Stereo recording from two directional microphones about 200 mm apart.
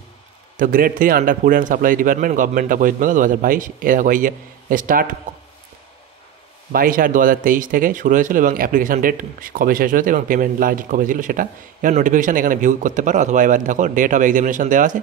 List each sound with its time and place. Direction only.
0.6 s a man's voice: 45° right (ahead or behind)
6.7 s speech: 45° right (ahead or behind)